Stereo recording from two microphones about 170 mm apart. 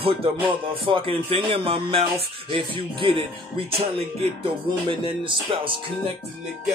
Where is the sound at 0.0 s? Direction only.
30° right (ahead or behind).